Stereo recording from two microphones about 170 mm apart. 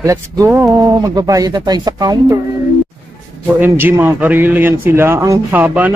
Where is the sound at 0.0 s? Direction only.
20° right (ahead or behind).